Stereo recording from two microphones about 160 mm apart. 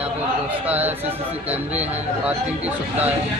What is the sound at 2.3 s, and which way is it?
Speech, 10° right (ahead or behind).